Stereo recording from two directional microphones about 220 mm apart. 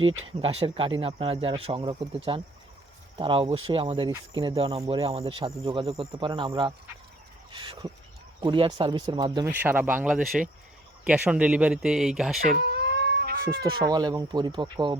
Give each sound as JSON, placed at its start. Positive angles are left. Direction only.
{"t": 0.4, "sound": "speech", "side_deg": -25}
{"t": 9.5, "sound": "speech", "side_deg": -10}
{"t": 12.5, "sound": "cat", "side_deg": -50}
{"t": 13.9, "sound": "speech", "side_deg": -20}